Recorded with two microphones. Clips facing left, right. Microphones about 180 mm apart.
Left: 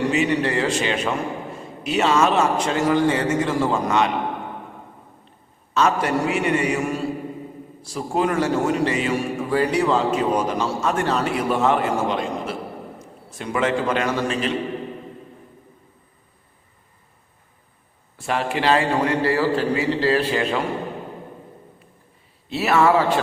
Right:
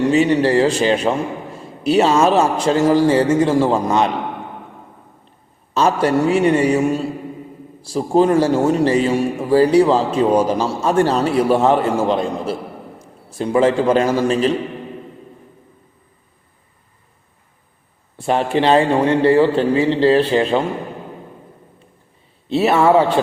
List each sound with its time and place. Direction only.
0.1 s a man's voice: 35° right (ahead or behind)
5.7 s a man's voice: 30° right (ahead or behind)
18.2 s a man's voice: 30° right (ahead or behind)
22.4 s a man's voice: 30° right (ahead or behind)